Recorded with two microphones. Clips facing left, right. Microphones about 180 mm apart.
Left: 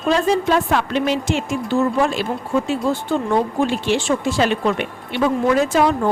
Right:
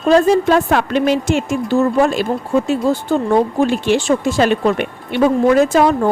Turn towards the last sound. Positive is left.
turn(degrees=-45)  # may be behind; listen again after turning